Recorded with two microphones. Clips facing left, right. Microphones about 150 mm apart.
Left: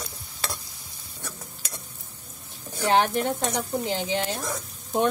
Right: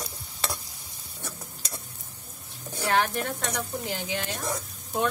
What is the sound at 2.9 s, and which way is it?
Sizzle, 25° left (ahead or behind).